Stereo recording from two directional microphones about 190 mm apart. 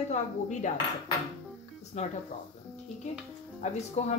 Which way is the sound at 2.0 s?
35° left (ahead or behind).